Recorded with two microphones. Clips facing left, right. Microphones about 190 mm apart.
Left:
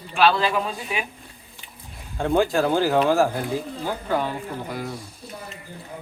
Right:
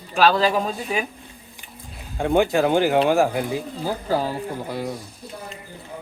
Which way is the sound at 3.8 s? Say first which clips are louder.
Right 2 dB; 35° right (ahead or behind).